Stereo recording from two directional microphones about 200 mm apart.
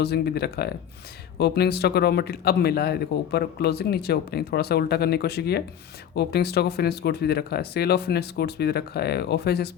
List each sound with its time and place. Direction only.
0.0 s speech: 55° left (ahead or behind)